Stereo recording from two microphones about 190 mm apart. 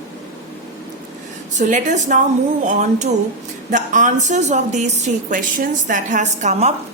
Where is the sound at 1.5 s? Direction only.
40° right (ahead or behind).